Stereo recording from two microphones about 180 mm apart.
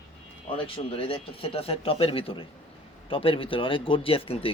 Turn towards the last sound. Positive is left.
turn(degrees=30)  # may be behind; listen again after turning